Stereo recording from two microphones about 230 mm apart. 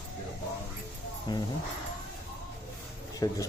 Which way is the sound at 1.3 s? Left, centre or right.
Centre.